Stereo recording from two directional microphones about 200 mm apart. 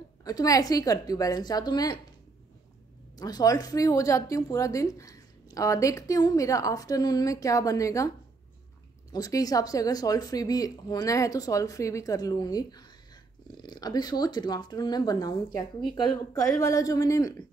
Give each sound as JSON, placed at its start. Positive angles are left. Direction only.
{"t": 0.2, "sound": "speech", "side_deg": 15}
{"t": 3.2, "sound": "speech", "side_deg": 20}
{"t": 9.1, "sound": "speech", "side_deg": 20}